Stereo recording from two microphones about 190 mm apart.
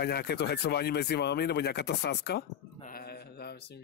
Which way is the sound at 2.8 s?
55° left (ahead or behind).